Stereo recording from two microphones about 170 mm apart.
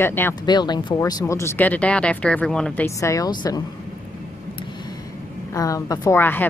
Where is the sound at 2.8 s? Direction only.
20° left (ahead or behind).